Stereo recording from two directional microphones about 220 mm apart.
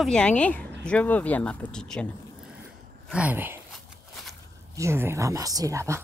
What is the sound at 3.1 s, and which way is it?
Speech, 5° right (ahead or behind).